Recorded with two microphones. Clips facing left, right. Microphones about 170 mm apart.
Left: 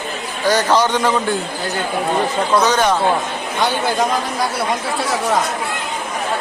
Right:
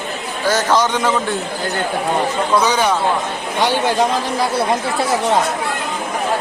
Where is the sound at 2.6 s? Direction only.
10° right (ahead or behind).